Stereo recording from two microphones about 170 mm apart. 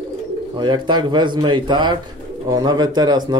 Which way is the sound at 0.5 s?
25° right (ahead or behind).